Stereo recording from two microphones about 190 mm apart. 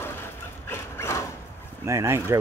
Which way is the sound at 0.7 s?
15° left (ahead or behind).